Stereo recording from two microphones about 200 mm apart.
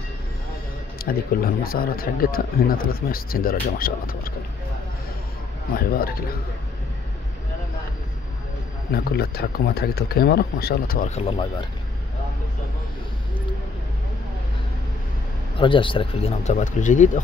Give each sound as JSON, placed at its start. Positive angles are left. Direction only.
{"t": 0.9, "sound": "speech", "side_deg": 45}
{"t": 5.8, "sound": "speech", "side_deg": 50}
{"t": 8.9, "sound": "speech", "side_deg": 50}
{"t": 11.1, "sound": "speech", "side_deg": 30}
{"t": 15.6, "sound": "speech", "side_deg": 25}